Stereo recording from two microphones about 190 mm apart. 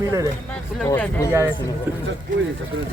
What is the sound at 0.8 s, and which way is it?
Speech, 5° left (ahead or behind).